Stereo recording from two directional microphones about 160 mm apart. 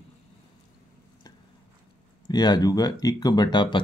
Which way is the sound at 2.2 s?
25° left (ahead or behind).